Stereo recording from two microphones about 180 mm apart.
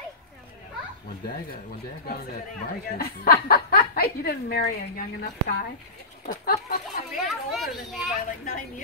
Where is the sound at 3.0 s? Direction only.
55° left (ahead or behind).